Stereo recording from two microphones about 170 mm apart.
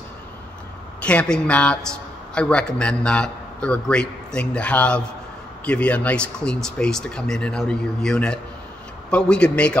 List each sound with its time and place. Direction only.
1.0 s a man's voice: 5° left (ahead or behind)